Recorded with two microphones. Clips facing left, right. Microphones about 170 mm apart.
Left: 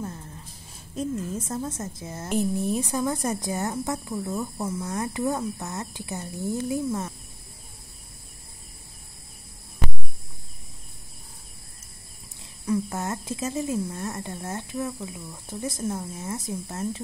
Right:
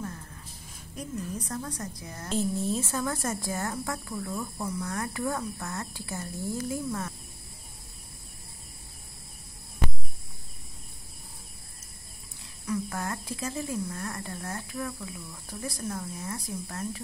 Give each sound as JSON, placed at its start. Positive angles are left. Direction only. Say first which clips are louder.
{"t": 0.7, "sound": "a woman's voice", "louder": "left 7 dB", "side_deg": 25}
{"t": 12.6, "sound": "a woman's voice", "louder": "left 5 dB", "side_deg": 25}